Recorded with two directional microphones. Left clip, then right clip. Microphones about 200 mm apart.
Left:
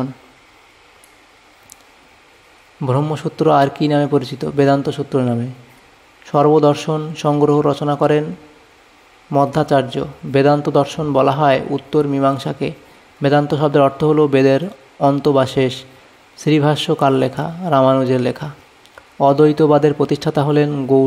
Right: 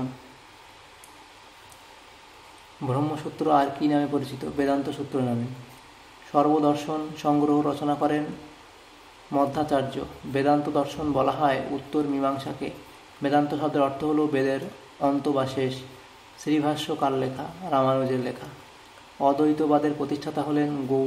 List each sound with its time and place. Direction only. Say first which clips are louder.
2.9 s a man's voice: left 9 dB; 40° left (ahead or behind)
6.3 s a man's voice: left 9 dB; 40° left (ahead or behind)
9.3 s a man's voice: left 9 dB; 40° left (ahead or behind)